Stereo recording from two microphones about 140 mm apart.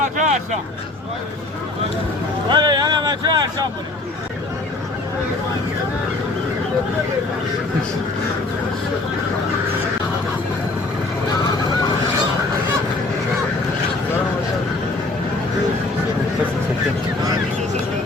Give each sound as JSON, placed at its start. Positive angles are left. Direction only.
{"t": 0.0, "sound": "vehicle", "side_deg": -60}
{"t": 2.5, "sound": "speech", "side_deg": -30}